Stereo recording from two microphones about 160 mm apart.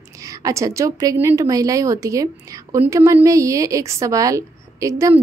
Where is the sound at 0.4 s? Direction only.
20° right (ahead or behind).